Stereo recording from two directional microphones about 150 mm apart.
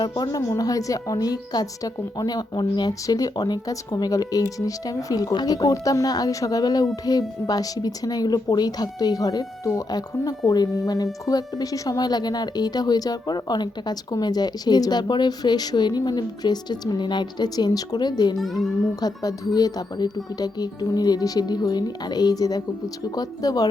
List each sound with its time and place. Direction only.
0.0 s a woman's voice: 25° left (ahead or behind)
18.3 s a child's voice: centre (ahead or behind)
18.9 s a woman's voice: 25° left (ahead or behind)